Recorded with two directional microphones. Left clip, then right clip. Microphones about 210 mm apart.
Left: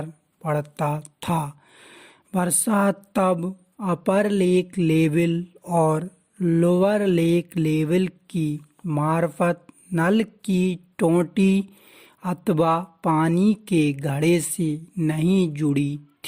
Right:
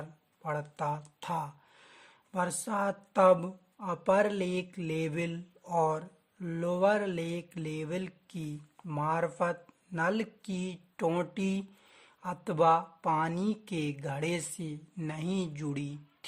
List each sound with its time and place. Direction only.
0.0 s speech: 30° left (ahead or behind)